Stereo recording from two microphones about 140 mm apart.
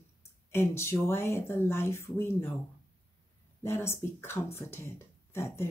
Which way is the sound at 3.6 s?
20° left (ahead or behind).